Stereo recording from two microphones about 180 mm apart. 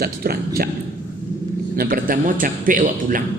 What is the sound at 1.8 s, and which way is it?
A man's voice, 50° right (ahead or behind).